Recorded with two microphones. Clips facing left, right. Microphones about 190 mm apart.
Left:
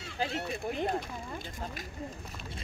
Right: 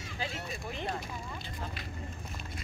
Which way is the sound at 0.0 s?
65° left (ahead or behind).